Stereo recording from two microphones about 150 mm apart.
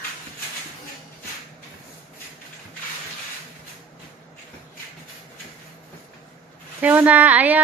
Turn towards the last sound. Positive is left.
turn(degrees=-10)  # may be behind; listen again after turning